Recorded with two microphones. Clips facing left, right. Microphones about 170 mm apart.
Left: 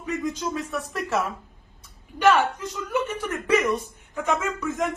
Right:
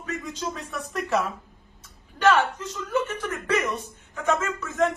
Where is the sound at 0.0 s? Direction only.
10° left (ahead or behind).